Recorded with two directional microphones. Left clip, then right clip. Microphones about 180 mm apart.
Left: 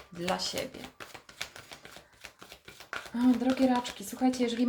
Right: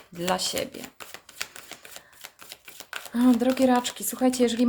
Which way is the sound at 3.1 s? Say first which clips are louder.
Right 6 dB; 50° right (ahead or behind).